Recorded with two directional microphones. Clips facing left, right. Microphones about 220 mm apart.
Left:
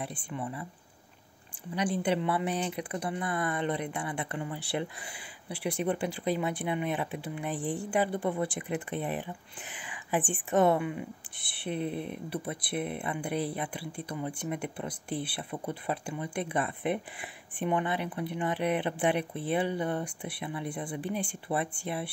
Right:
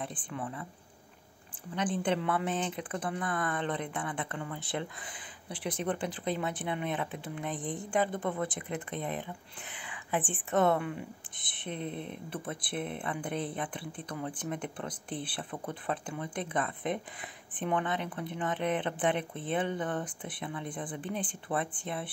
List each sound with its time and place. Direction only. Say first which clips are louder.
0.0 s speech: left 2 dB; 10° left (ahead or behind)
1.8 s speech: left 2 dB; 10° left (ahead or behind)
7.5 s speech: left 4 dB; centre (ahead or behind)
7.9 s speech: left 1 dB; 15° left (ahead or behind)
9.8 s whispering: left 2 dB; 15° left (ahead or behind)
10.5 s speech: left 2 dB; 15° left (ahead or behind)